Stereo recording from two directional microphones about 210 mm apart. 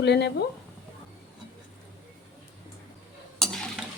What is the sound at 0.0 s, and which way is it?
Speech, 55° left (ahead or behind).